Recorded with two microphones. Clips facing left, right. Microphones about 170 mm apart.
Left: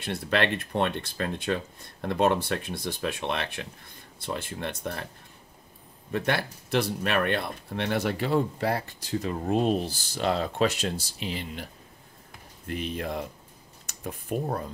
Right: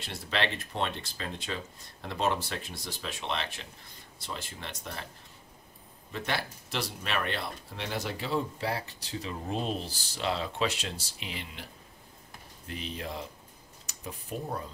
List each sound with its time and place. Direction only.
0.0 s speech: 55° left (ahead or behind)
6.1 s speech: 55° left (ahead or behind); by 11.6 s 35° left (ahead or behind)
12.6 s speech: 55° left (ahead or behind)
14.3 s speech: 55° left (ahead or behind)